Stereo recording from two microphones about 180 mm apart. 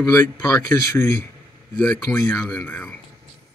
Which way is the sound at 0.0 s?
20° left (ahead or behind).